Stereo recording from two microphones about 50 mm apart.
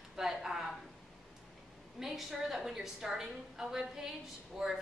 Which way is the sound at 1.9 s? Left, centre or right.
Centre.